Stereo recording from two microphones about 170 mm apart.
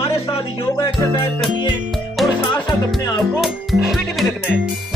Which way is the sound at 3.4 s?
Centre (ahead or behind).